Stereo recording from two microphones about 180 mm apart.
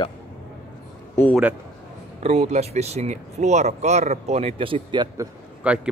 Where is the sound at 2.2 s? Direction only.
35° right (ahead or behind).